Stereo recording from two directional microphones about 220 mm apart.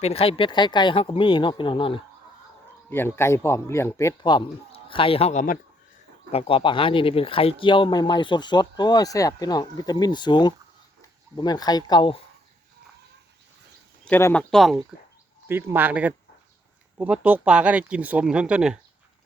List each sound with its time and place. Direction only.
0.0 s speech: 25° left (ahead or behind)
2.9 s speech: 10° left (ahead or behind)
14.0 s speech: 10° left (ahead or behind)